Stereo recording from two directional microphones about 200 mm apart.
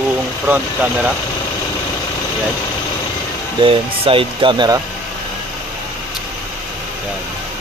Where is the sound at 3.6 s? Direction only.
25° right (ahead or behind).